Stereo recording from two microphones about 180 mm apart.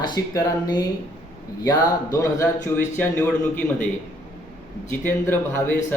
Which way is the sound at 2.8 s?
10° left (ahead or behind).